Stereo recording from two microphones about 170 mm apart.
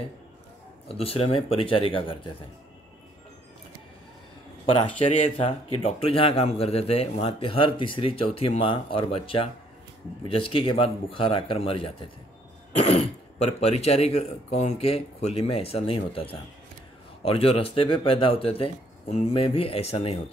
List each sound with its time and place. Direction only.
0.8 s speech: 35° left (ahead or behind)
4.6 s speech: 35° left (ahead or behind)